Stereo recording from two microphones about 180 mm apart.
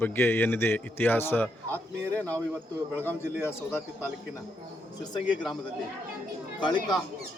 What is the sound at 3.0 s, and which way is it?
Speech, 10° left (ahead or behind).